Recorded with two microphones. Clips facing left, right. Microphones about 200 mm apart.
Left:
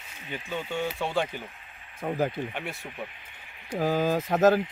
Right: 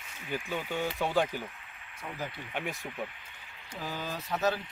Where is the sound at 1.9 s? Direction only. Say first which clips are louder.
Left 11 dB; 50° left (ahead or behind).